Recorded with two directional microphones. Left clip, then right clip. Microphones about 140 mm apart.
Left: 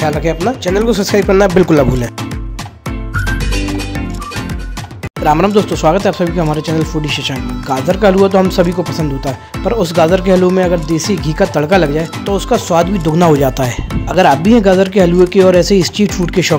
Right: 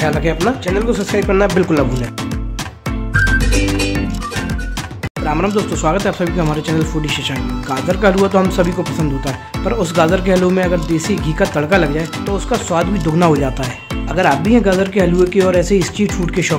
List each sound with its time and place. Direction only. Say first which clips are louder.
0.0 s speech: left 2 dB; 25° left (ahead or behind)
0.7 s speech: left 4 dB; 45° left (ahead or behind)
5.2 s speech: left 7 dB; 50° left (ahead or behind)
14.5 s speech: left 4 dB; 45° left (ahead or behind)